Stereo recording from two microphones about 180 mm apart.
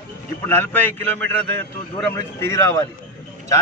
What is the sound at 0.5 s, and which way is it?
Speech, 10° left (ahead or behind).